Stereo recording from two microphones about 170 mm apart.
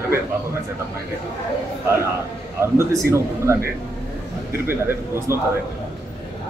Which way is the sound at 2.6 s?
15° right (ahead or behind).